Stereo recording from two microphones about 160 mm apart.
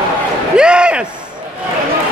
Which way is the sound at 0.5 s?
5° right (ahead or behind).